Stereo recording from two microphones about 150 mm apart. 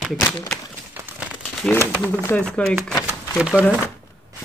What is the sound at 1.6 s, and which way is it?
Speech, 15° left (ahead or behind).